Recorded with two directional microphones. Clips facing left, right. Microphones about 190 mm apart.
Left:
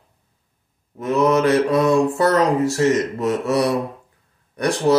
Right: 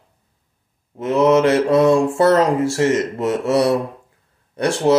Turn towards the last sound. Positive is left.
turn(degrees=-25)  # may be behind; listen again after turning